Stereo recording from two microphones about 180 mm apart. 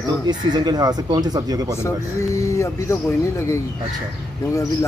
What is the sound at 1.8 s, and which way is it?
Speech, 15° left (ahead or behind).